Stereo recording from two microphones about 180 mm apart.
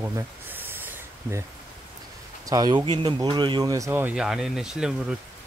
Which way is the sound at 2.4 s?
20° right (ahead or behind).